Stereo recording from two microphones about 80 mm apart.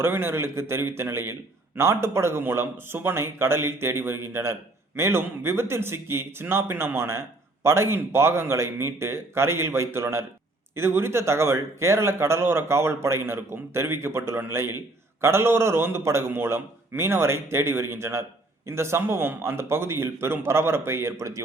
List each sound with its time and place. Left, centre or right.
0.0 s a man's voice: right